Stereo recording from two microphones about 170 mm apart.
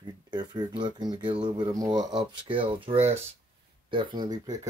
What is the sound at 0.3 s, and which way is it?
Speech, 25° right (ahead or behind).